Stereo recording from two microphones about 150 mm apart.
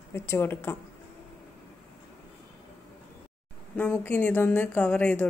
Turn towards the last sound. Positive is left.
turn(degrees=10)  # may be behind; listen again after turning